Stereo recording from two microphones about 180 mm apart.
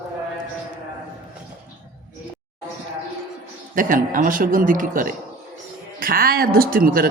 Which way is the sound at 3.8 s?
50° right (ahead or behind).